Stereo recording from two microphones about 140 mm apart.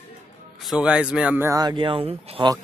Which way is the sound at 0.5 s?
Centre (ahead or behind).